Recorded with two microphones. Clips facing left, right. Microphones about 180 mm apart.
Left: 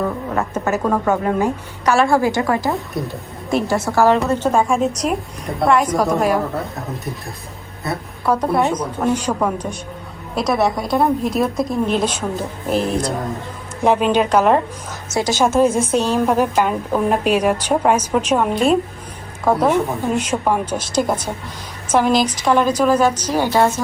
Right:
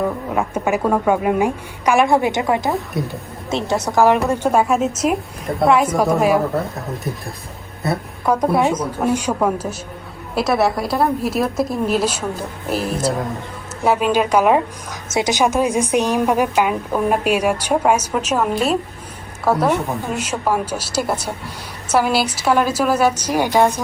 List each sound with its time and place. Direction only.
0.0 s speech: 10° right (ahead or behind)
2.6 s a woman's voice: centre (ahead or behind)
3.8 s speech: 15° right (ahead or behind)
8.2 s a woman's voice: 10° right (ahead or behind)
16.2 s a woman's voice: 5° right (ahead or behind)